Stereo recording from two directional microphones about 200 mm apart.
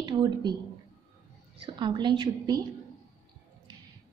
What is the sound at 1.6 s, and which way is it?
A woman's voice, 25° right (ahead or behind).